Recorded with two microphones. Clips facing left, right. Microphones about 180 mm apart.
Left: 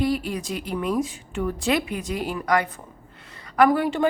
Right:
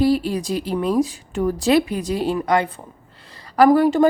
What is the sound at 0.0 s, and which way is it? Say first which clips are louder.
A woman's voice: right 6 dB; 30° right (ahead or behind).